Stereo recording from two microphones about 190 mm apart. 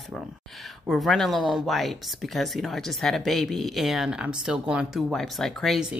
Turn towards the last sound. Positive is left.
turn(degrees=0)  # may be behind; listen again after turning